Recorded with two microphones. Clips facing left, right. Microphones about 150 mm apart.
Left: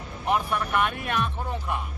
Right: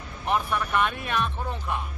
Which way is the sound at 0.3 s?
5° left (ahead or behind).